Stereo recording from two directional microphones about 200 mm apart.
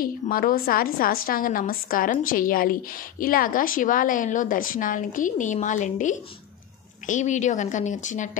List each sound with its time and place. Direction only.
0.0 s a woman's voice: 45° left (ahead or behind)